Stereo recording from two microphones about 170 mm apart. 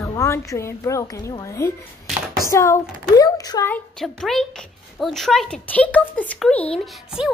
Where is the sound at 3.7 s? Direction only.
5° left (ahead or behind).